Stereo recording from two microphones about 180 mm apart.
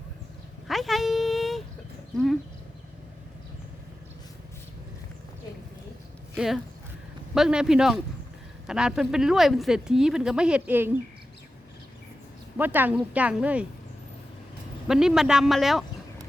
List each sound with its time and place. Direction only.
0.7 s a sound: centre (ahead or behind)
2.1 s speech: centre (ahead or behind)
6.3 s speech: centre (ahead or behind)
12.5 s speech: 10° right (ahead or behind)
14.8 s speech: 5° right (ahead or behind)